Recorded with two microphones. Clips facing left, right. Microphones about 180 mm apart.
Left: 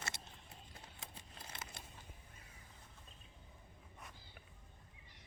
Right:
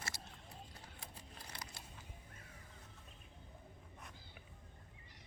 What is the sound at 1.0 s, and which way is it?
Scissors, 20° left (ahead or behind).